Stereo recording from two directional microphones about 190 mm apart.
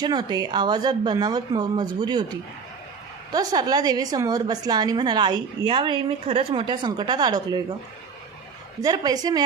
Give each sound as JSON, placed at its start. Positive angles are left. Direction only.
{"t": 0.0, "sound": "a woman's voice", "side_deg": -20}
{"t": 8.8, "sound": "a woman's voice", "side_deg": -20}